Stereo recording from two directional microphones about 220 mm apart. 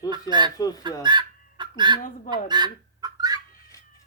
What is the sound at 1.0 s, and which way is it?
Chicken, 20° right (ahead or behind).